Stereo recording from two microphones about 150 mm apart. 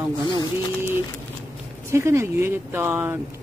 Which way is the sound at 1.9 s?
20° right (ahead or behind).